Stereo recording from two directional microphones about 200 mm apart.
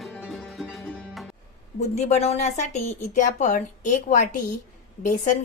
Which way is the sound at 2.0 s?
35° left (ahead or behind).